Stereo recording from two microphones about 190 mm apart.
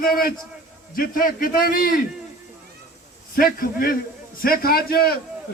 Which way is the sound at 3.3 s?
50° left (ahead or behind).